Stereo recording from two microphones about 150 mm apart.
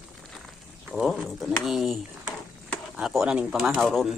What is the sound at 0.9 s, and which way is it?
Speech, 5° right (ahead or behind).